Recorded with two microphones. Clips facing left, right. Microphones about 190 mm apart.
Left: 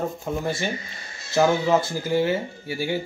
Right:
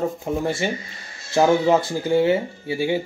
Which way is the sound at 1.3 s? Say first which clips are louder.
Right 3 dB; 25° right (ahead or behind).